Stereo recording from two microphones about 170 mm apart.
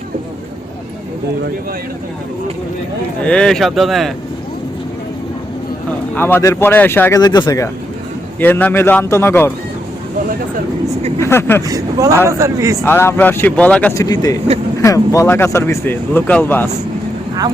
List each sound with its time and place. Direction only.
3.2 s speech: 5° left (ahead or behind)
6.1 s speech: 15° left (ahead or behind)
7.2 s speech: 25° left (ahead or behind)
8.4 s speech: 10° left (ahead or behind)
11.2 s speech: 15° left (ahead or behind)
11.7 s a man's voice: 20° right (ahead or behind)
12.8 s speech: 15° left (ahead or behind)
13.9 s speech: 20° left (ahead or behind)